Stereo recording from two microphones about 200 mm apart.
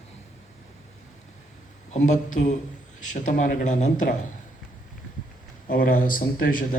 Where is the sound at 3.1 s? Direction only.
40° left (ahead or behind).